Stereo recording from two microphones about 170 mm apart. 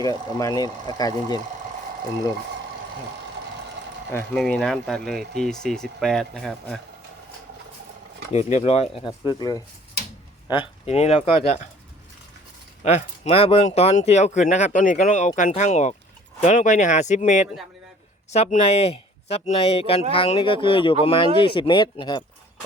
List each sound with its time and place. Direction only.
0.0 s speech: 20° left (ahead or behind)
4.1 s speech: 5° left (ahead or behind)
8.3 s speech: 40° left (ahead or behind)
9.0 s speech: 25° left (ahead or behind)
12.8 s speech: 40° left (ahead or behind)